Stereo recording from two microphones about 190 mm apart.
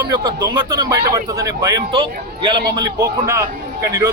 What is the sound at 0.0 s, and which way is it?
Speech, 20° right (ahead or behind).